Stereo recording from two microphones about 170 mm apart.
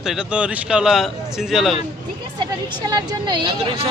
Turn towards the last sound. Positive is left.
turn(degrees=-35)  # may be behind; listen again after turning